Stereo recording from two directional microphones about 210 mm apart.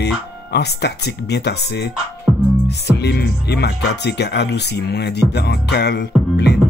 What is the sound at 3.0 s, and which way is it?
Speech, 50° left (ahead or behind).